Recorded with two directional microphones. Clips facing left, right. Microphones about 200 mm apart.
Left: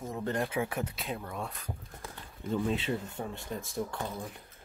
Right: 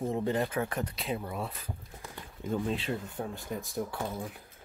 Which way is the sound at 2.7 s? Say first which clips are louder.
Left 1 dB; centre (ahead or behind).